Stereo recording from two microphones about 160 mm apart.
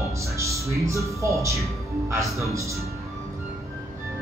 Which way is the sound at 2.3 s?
20° right (ahead or behind).